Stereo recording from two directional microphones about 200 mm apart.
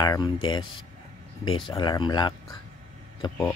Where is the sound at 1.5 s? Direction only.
25° left (ahead or behind).